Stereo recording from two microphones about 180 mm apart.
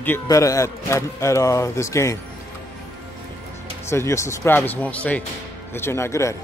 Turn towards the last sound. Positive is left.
turn(degrees=15)  # may be behind; listen again after turning